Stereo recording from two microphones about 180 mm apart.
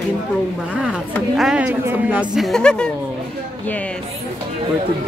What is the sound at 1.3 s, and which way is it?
A woman's voice, 5° right (ahead or behind).